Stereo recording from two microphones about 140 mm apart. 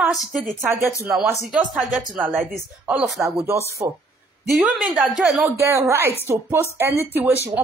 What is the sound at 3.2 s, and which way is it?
Speech, 20° right (ahead or behind).